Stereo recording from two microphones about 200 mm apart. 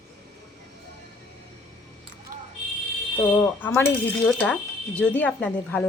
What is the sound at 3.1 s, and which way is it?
Speech, 10° left (ahead or behind).